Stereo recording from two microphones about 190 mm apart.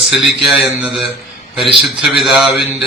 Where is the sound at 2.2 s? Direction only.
5° right (ahead or behind).